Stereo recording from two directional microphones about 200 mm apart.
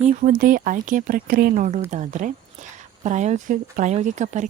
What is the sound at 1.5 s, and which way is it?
Speech, 35° right (ahead or behind).